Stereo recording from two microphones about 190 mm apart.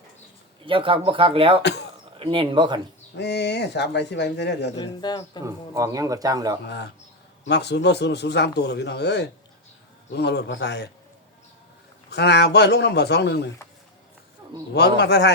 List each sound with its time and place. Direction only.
0.6 s a man's voice: 25° right (ahead or behind)
3.2 s a man's voice: 60° left (ahead or behind)
4.8 s a man's voice: 20° left (ahead or behind)
5.5 s a man's voice: 15° right (ahead or behind)
6.7 s a man's voice: 60° left (ahead or behind)
12.1 s a man's voice: 60° left (ahead or behind)
14.7 s a man's voice: 60° left (ahead or behind)